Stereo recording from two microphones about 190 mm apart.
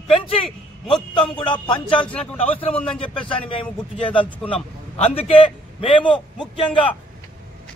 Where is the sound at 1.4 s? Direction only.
25° left (ahead or behind).